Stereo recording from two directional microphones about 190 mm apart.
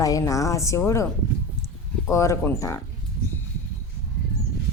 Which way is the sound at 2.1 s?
15° left (ahead or behind).